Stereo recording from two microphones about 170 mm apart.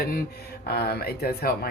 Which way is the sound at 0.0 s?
60° left (ahead or behind).